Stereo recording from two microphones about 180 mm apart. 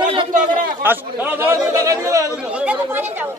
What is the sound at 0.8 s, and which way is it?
Speech, 10° right (ahead or behind).